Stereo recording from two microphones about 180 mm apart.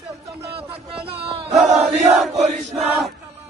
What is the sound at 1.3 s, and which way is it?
Chant, 35° right (ahead or behind).